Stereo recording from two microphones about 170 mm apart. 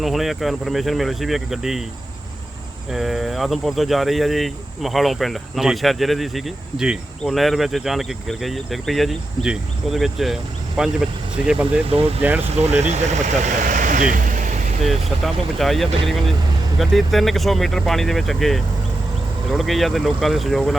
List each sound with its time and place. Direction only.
0.0 s speech: centre (ahead or behind)
2.9 s speech: centre (ahead or behind)
11.9 s speech: 35° right (ahead or behind)
12.2 s speech: 10° right (ahead or behind)
12.5 s speech: 40° right (ahead or behind)
14.8 s speech: centre (ahead or behind)